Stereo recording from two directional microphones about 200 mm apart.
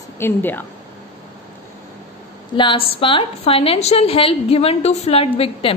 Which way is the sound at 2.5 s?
25° left (ahead or behind).